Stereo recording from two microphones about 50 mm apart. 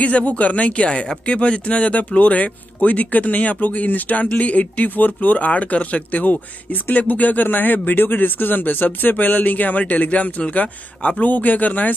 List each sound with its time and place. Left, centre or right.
0.0 s speech: left